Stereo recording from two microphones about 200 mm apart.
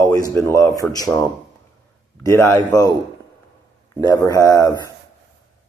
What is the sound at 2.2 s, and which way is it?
Speech, 15° left (ahead or behind).